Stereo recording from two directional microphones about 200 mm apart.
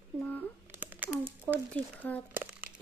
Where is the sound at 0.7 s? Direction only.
10° right (ahead or behind).